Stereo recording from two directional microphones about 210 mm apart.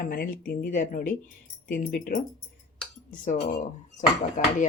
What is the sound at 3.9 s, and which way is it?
Speech, 35° left (ahead or behind).